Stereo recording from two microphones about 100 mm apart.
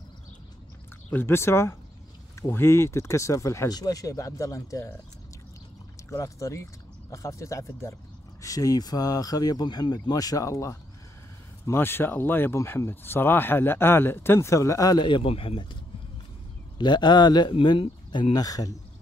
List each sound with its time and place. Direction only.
1.1 s speech: 25° left (ahead or behind)
6.0 s speech: 30° left (ahead or behind)
15.0 s speech: 55° left (ahead or behind)
16.7 s speech: 50° left (ahead or behind)
18.3 s speech: 40° left (ahead or behind)